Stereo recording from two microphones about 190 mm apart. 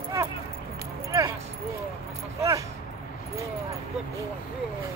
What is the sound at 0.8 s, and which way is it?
Keys jangling, 15° right (ahead or behind).